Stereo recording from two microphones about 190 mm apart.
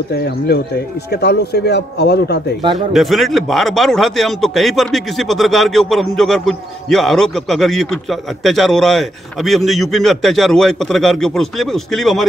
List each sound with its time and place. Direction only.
0.1 s speech: 60° left (ahead or behind)
2.9 s speech: centre (ahead or behind)